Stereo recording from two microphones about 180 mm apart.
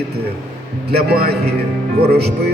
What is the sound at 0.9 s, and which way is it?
Speech, 60° right (ahead or behind).